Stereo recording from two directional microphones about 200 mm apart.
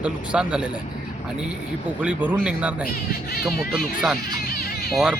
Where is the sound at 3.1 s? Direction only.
50° left (ahead or behind).